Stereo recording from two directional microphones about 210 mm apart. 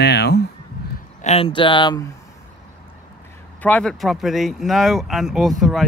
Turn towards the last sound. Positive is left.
turn(degrees=0)  # may be behind; listen again after turning